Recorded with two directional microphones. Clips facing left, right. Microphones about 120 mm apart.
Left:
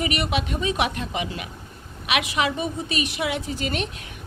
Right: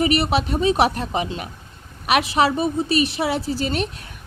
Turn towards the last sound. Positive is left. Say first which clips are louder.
# right 4 dB
turn(degrees=-35)  # may be behind; listen again after turning